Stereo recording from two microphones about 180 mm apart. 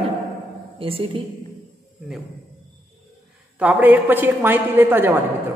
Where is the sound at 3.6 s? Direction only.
10° right (ahead or behind).